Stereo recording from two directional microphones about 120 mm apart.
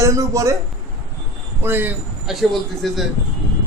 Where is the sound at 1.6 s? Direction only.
15° right (ahead or behind).